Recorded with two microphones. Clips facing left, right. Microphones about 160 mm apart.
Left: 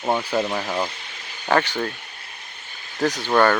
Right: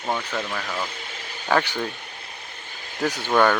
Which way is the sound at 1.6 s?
10° right (ahead or behind).